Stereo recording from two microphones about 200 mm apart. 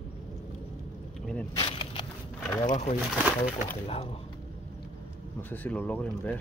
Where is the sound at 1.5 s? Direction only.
25° left (ahead or behind).